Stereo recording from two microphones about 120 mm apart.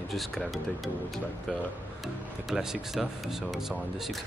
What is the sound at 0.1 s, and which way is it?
Speech, centre (ahead or behind).